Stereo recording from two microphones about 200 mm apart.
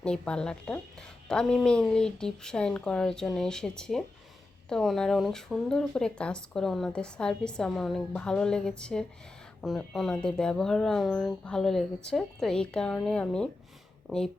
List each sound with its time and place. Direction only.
0.0 s speech: 5° left (ahead or behind)